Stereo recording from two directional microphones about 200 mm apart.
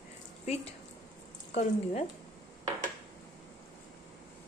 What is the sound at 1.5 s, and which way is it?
Speech, 35° left (ahead or behind).